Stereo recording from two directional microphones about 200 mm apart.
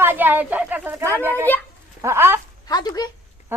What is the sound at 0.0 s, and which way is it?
A woman's voice, 10° right (ahead or behind).